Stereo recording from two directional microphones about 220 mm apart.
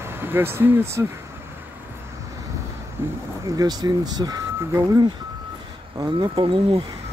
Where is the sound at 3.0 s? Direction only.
10° right (ahead or behind).